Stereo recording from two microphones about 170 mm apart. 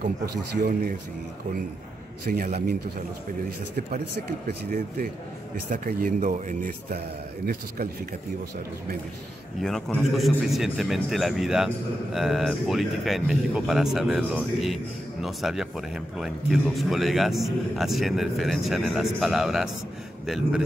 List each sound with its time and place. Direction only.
2.2 s speech: 65° right (ahead or behind)
3.7 s speech: 65° right (ahead or behind)
7.4 s speech: 60° right (ahead or behind)
9.6 s a man's voice: centre (ahead or behind)